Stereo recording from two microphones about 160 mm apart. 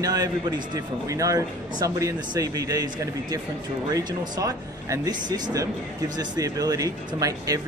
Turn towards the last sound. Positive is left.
turn(degrees=-20)  # may be behind; listen again after turning